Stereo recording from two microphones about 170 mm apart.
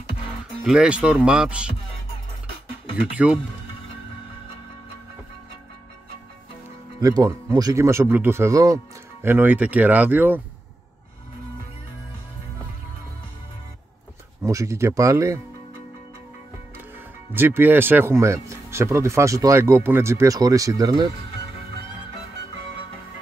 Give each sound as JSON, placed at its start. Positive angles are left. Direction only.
{"t": 0.7, "sound": "speech", "side_deg": -5}
{"t": 3.0, "sound": "speech", "side_deg": -5}
{"t": 7.0, "sound": "speech", "side_deg": -20}
{"t": 14.4, "sound": "speech", "side_deg": -20}
{"t": 17.3, "sound": "speech", "side_deg": -10}